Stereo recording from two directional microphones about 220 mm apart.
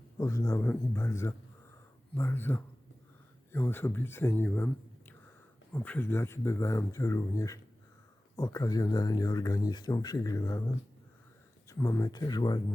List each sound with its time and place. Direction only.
0.2 s speech: 15° left (ahead or behind)
11.7 s speech: 15° left (ahead or behind)